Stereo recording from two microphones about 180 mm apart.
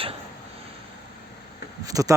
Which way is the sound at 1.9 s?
20° right (ahead or behind).